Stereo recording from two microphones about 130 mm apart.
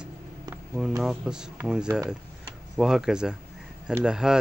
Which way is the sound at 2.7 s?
5° right (ahead or behind).